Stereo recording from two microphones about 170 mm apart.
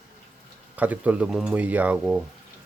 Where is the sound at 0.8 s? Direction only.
10° right (ahead or behind).